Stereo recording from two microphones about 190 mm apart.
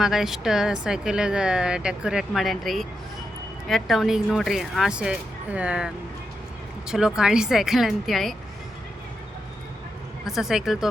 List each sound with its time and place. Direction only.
0.0 s speech: centre (ahead or behind)
10.2 s speech: centre (ahead or behind)